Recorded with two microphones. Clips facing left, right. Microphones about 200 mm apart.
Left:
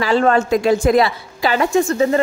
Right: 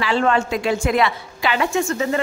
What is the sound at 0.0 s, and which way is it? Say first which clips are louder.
A woman's voice: left 4 dB; 40° left (ahead or behind).